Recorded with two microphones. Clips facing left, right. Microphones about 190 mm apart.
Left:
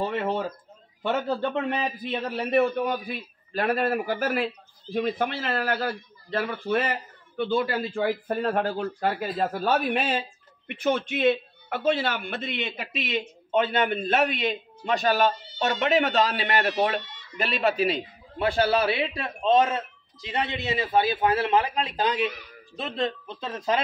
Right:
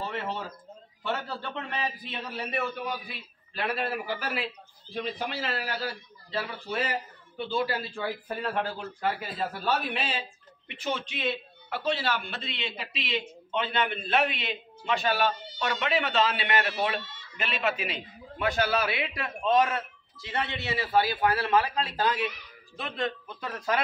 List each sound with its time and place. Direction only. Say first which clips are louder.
1.0 s a man's voice: left 7 dB; 45° left (ahead or behind); by 23.8 s 20° left (ahead or behind)